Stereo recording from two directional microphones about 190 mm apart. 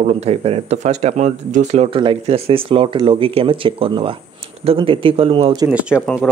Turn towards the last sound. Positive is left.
turn(degrees=-5)  # may be behind; listen again after turning